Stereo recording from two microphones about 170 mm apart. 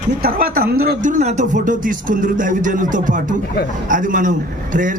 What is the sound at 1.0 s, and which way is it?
Speech, 40° right (ahead or behind).